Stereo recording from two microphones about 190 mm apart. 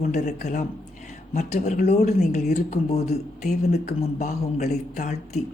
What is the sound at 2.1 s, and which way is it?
Speech, 35° left (ahead or behind).